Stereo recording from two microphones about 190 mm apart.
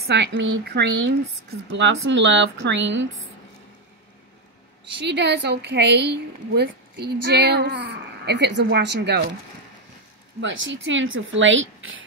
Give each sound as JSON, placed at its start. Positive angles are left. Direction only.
{"t": 0.0, "sound": "a woman's voice", "side_deg": -65}
{"t": 5.0, "sound": "a woman's voice", "side_deg": -65}
{"t": 10.4, "sound": "speech", "side_deg": -75}